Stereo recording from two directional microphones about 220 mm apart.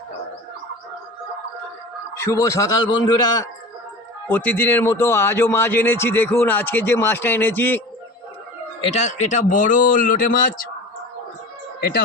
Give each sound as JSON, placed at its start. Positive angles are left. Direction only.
{"t": 2.2, "sound": "a man's voice", "side_deg": 15}
{"t": 4.3, "sound": "a man's voice", "side_deg": 10}
{"t": 8.8, "sound": "a man's voice", "side_deg": 30}
{"t": 11.8, "sound": "speech", "side_deg": 45}